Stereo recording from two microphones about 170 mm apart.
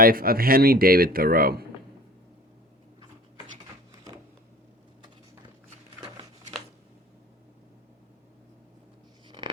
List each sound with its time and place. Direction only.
0.0 s speech: 60° right (ahead or behind)